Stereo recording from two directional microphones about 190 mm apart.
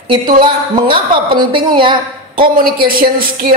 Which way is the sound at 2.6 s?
50° right (ahead or behind).